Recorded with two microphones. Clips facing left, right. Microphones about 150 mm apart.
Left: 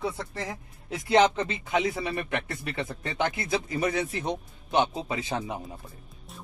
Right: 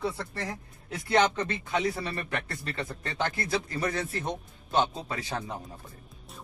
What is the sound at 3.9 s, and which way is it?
Speech, 10° left (ahead or behind).